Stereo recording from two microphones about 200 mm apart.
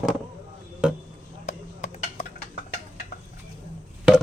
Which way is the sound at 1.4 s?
35° left (ahead or behind).